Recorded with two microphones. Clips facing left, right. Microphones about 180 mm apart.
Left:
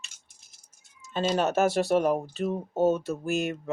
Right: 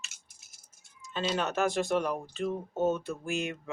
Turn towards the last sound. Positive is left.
turn(degrees=40)  # may be behind; listen again after turning